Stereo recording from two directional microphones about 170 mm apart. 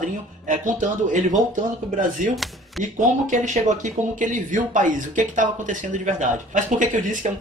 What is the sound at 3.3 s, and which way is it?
Speech, 45° right (ahead or behind).